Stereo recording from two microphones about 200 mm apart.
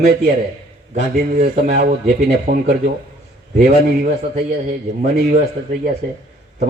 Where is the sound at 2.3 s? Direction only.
50° right (ahead or behind).